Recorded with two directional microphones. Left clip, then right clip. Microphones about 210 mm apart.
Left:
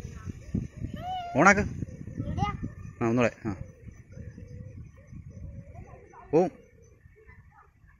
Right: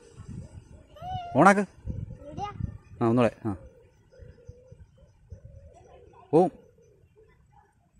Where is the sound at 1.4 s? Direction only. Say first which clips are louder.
Right 1 dB; 20° right (ahead or behind).